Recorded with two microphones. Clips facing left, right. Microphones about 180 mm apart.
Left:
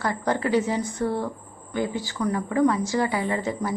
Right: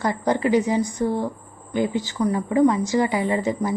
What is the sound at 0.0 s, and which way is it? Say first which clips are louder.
A woman's voice: right 3 dB; 15° right (ahead or behind).